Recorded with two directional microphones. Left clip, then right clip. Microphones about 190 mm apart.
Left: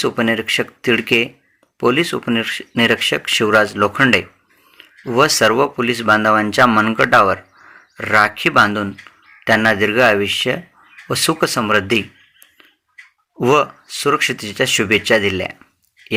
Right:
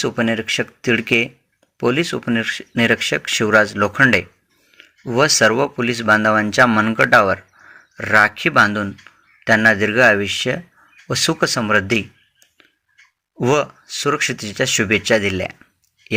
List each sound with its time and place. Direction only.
0.0 s speech: 40° right (ahead or behind)